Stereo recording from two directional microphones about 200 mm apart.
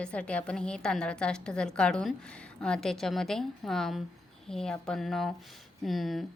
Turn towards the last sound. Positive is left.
turn(degrees=0)  # may be behind; listen again after turning